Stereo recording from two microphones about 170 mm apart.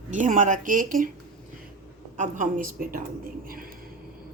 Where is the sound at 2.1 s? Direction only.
50° right (ahead or behind).